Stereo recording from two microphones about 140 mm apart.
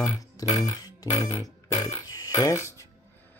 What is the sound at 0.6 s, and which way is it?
Music, 25° left (ahead or behind).